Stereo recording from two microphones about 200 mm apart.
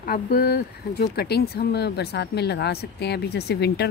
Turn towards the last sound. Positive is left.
turn(degrees=55)  # may be behind; listen again after turning